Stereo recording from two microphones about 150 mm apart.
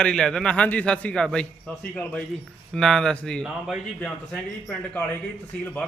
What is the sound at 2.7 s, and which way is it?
A man's voice, 5° left (ahead or behind).